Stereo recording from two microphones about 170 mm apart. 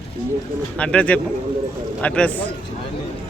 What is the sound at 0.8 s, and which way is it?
Speech, 5° left (ahead or behind).